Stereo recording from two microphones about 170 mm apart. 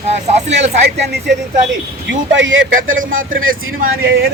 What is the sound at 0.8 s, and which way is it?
Speech, 80° right.